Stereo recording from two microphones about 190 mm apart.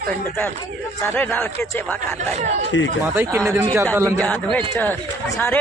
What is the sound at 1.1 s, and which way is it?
Speech, 10° left (ahead or behind).